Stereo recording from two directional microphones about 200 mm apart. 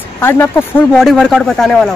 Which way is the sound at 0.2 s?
10° left (ahead or behind).